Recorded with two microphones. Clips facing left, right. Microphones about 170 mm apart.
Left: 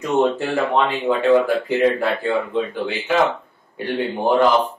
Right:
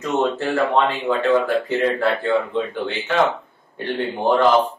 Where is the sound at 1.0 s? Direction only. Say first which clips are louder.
Left 2 dB; 10° left (ahead or behind).